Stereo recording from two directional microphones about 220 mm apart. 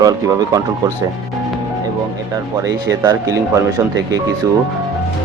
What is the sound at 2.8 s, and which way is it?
Speech, 15° right (ahead or behind).